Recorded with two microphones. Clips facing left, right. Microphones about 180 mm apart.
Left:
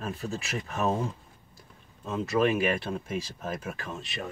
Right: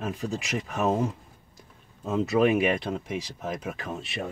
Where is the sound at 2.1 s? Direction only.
20° right (ahead or behind).